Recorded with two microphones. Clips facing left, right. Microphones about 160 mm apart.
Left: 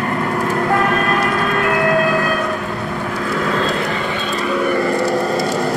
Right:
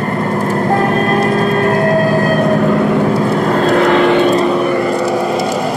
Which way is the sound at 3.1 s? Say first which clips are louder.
Right 7 dB; 35° right (ahead or behind).